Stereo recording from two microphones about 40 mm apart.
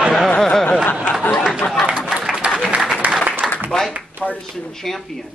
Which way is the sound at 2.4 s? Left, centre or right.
Right.